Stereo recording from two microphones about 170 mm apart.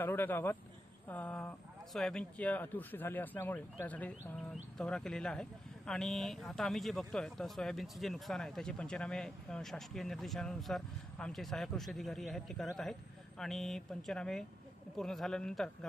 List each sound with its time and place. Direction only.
0.0 s speech: 10° left (ahead or behind)